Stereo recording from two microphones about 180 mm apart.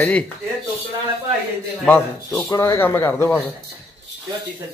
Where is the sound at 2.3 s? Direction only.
15° left (ahead or behind).